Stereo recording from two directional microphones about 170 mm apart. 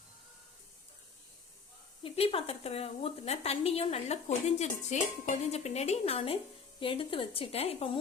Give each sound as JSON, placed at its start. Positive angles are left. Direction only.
{"t": 2.0, "sound": "a woman's voice", "side_deg": 35}